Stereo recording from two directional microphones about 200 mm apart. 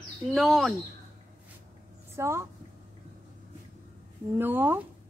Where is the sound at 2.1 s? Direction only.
15° right (ahead or behind).